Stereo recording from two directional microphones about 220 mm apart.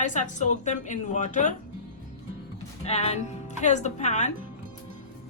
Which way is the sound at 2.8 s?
30° left (ahead or behind).